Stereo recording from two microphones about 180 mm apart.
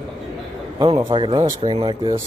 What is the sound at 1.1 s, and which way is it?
Speech, 30° right (ahead or behind).